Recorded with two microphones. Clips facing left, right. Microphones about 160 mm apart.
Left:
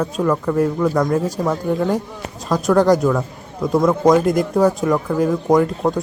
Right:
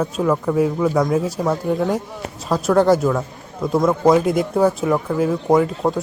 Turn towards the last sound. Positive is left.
turn(degrees=-5)  # may be behind; listen again after turning